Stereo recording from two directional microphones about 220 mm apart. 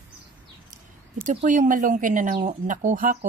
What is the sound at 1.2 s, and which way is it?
Speech, 35° right (ahead or behind).